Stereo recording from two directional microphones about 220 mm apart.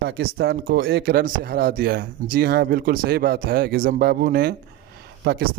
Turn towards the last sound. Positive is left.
turn(degrees=-45)  # may be behind; listen again after turning